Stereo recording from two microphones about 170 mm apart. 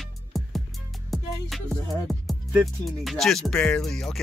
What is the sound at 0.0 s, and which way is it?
Music, centre (ahead or behind).